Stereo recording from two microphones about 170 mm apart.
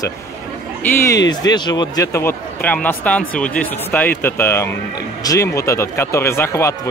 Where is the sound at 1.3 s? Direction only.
25° left (ahead or behind).